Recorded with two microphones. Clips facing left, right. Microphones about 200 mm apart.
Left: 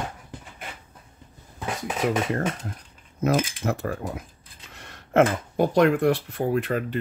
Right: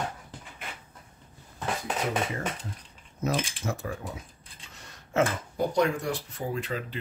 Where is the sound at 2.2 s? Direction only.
60° left (ahead or behind).